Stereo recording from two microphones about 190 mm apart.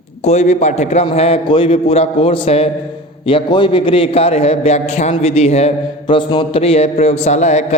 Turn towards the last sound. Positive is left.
turn(degrees=35)  # may be behind; listen again after turning